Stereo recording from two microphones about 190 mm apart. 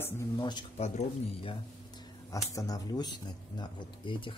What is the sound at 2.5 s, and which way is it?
Speech, 20° left (ahead or behind).